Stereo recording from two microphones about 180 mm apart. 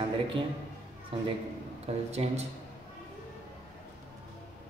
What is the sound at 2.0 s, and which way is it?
Speech, 35° right (ahead or behind).